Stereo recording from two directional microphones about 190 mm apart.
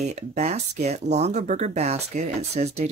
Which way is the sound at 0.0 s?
35° right (ahead or behind).